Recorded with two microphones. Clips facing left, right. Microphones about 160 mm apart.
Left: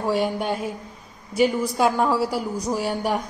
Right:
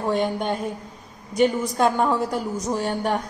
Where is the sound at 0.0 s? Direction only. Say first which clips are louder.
Even; 5° left (ahead or behind).